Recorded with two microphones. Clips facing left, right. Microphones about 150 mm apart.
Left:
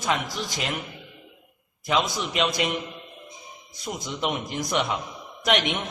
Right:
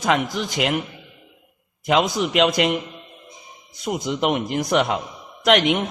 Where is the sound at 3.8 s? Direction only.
60° right (ahead or behind).